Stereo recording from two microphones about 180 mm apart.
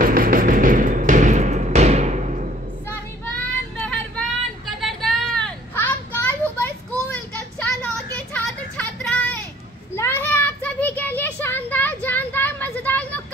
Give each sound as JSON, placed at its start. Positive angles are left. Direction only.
{"t": 0.0, "sound": "music", "side_deg": -50}
{"t": 3.7, "sound": "vehicle", "side_deg": 5}
{"t": 6.6, "sound": "child singing", "side_deg": 10}